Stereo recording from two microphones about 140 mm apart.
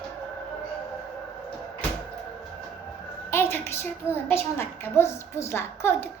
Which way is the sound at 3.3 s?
15° left (ahead or behind).